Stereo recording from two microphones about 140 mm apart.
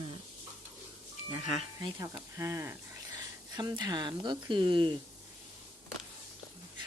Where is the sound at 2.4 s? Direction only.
20° right (ahead or behind).